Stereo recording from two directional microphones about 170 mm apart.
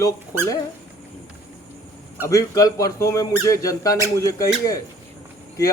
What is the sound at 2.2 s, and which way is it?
A man's voice, 20° left (ahead or behind).